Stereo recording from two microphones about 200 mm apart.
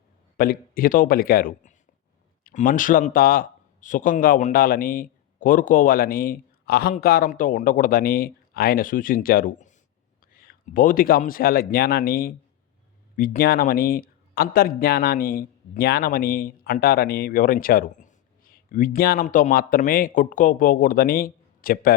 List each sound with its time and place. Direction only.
0.3 s speech: 45° left (ahead or behind)